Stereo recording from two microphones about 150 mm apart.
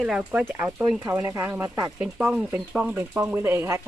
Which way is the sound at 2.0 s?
5° right (ahead or behind).